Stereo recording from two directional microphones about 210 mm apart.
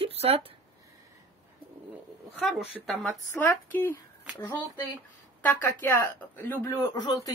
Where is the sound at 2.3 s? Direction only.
Centre (ahead or behind).